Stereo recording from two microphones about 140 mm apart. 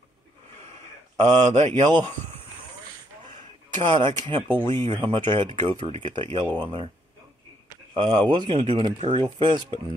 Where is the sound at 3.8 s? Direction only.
35° right (ahead or behind).